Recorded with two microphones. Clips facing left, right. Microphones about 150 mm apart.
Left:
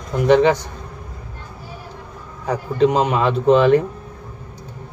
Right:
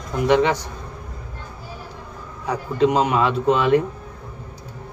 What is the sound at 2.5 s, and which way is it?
A man's voice, 30° left (ahead or behind).